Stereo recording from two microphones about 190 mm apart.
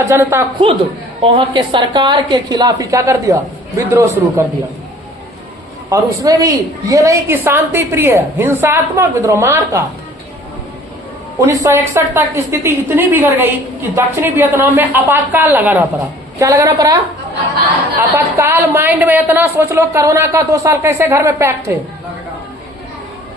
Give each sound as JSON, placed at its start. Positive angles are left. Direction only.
{"t": 0.1, "sound": "a woman's voice", "side_deg": -15}
{"t": 1.2, "sound": "a woman's voice", "side_deg": -25}
{"t": 5.9, "sound": "a woman's voice", "side_deg": -15}
{"t": 11.3, "sound": "a woman's voice", "side_deg": -15}
{"t": 18.3, "sound": "a woman's voice", "side_deg": -10}